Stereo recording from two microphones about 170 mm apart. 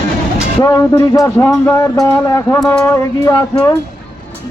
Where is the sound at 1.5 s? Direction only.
15° left (ahead or behind).